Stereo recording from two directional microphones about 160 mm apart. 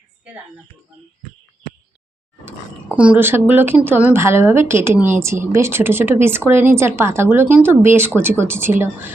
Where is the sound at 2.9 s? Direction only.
10° right (ahead or behind).